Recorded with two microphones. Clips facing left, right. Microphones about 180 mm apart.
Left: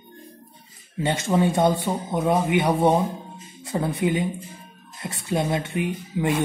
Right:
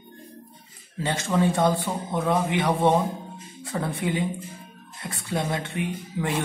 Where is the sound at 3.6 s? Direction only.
25° left (ahead or behind).